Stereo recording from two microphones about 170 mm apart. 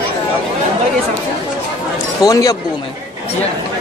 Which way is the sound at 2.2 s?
20° left (ahead or behind).